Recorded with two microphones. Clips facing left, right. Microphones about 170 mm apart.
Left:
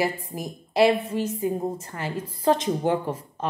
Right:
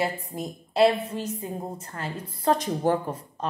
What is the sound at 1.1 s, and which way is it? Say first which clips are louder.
Speech: left 6 dB; 30° right (ahead or behind).